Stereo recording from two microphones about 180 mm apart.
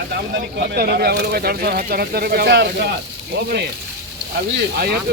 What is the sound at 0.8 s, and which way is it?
Speech, 60° right (ahead or behind).